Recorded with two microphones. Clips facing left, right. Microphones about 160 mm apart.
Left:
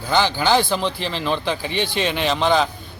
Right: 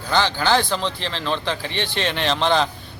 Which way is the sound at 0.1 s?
10° left (ahead or behind).